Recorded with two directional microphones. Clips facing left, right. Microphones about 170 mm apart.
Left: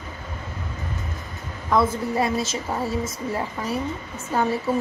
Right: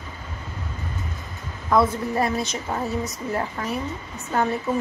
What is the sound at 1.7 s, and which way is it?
Speech, centre (ahead or behind).